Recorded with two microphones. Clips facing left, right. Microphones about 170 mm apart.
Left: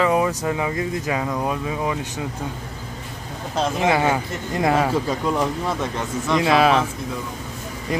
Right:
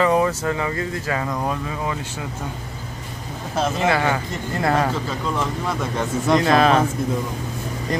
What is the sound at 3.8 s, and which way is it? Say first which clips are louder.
Speech: left 2 dB; 15° left (ahead or behind).